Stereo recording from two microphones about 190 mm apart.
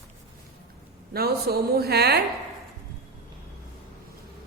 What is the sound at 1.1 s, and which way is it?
Speech, 55° right (ahead or behind).